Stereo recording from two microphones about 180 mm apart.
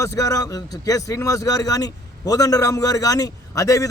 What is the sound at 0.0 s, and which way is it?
A man's voice, 20° left (ahead or behind).